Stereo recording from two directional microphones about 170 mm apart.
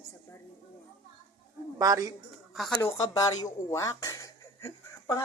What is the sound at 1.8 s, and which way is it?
Speech, 20° right (ahead or behind).